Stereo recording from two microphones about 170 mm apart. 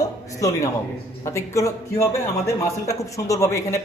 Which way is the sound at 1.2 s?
15° left (ahead or behind).